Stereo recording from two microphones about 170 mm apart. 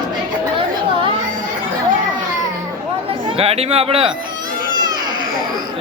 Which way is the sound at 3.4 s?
35° right (ahead or behind).